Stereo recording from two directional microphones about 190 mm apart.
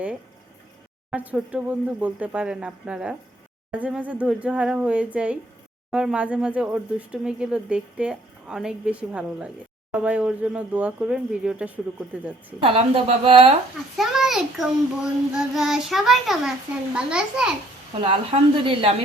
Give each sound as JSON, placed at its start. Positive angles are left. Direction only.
{"t": 1.1, "sound": "speech", "side_deg": -10}
{"t": 12.6, "sound": "a woman's voice", "side_deg": -30}
{"t": 13.9, "sound": "speech", "side_deg": 0}
{"t": 18.0, "sound": "a woman's voice", "side_deg": -30}